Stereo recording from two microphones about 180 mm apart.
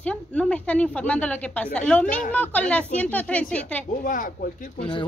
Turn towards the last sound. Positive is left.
turn(degrees=30)  # may be behind; listen again after turning